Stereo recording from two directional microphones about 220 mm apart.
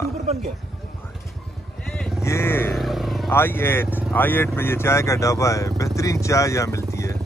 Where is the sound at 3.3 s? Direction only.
10° left (ahead or behind).